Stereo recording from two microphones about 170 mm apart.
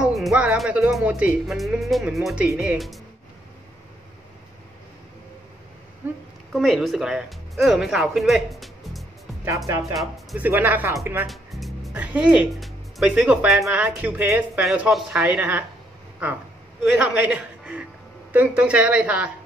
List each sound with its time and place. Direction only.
0.0 s speech: centre (ahead or behind)
6.0 s speech: 10° right (ahead or behind)
6.5 s speech: centre (ahead or behind)
9.7 s speech: 15° right (ahead or behind)
9.9 s speech: 5° right (ahead or behind)
11.2 s speech: centre (ahead or behind)
16.9 s a woman's voice: 10° right (ahead or behind)